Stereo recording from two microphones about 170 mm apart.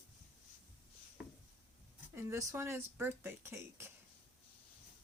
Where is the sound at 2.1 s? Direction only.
15° right (ahead or behind).